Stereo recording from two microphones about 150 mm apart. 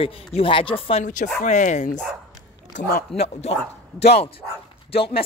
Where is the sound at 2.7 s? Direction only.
80° left.